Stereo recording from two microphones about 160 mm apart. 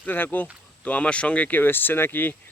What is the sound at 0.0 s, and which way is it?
Speech, 10° left (ahead or behind).